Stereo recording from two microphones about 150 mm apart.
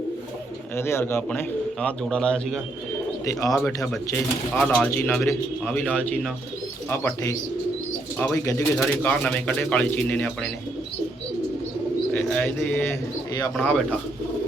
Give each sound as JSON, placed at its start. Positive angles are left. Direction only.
{"t": 0.8, "sound": "a man's voice", "side_deg": 15}
{"t": 8.4, "sound": "speech", "side_deg": 15}
{"t": 12.1, "sound": "speech", "side_deg": 10}
{"t": 13.6, "sound": "speech", "side_deg": 10}